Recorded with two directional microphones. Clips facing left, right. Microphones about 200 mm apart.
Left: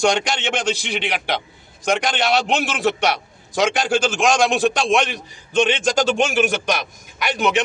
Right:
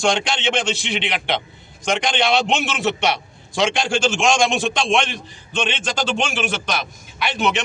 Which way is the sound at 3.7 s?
5° left (ahead or behind).